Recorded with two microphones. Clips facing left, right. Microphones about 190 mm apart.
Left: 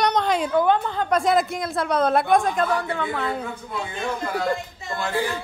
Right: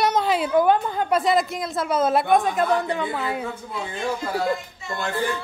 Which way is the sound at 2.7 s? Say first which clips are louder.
Right 2 dB; 20° right (ahead or behind).